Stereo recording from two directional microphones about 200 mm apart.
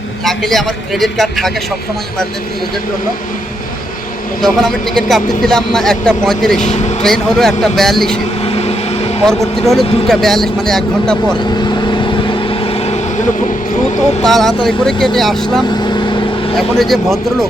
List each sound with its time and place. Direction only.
0.3 s speech: centre (ahead or behind)
4.4 s speech: centre (ahead or behind)
6.6 s speech: 35° left (ahead or behind)
7.0 s speech: centre (ahead or behind)
8.4 s vehicle: 30° left (ahead or behind)
9.2 s speech: centre (ahead or behind)
11.3 s vehicle: 20° left (ahead or behind)
14.3 s speech: centre (ahead or behind)
16.0 s vehicle: 25° left (ahead or behind)
16.6 s speech: centre (ahead or behind)